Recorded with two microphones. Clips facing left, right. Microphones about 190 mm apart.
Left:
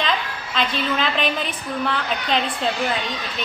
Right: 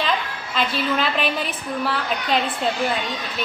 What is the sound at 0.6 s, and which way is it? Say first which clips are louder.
A woman's voice: right 1 dB; 5° right (ahead or behind).